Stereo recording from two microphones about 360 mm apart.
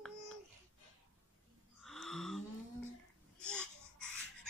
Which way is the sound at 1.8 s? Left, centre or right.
Centre.